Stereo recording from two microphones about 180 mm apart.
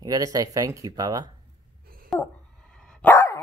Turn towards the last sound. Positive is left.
turn(degrees=15)  # may be behind; listen again after turning